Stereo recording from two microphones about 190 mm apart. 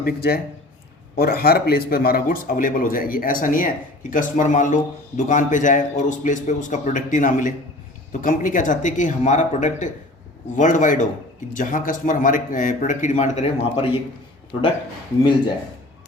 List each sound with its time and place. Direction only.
0.0 s a man's voice: 55° left (ahead or behind); by 13.8 s 35° left (ahead or behind)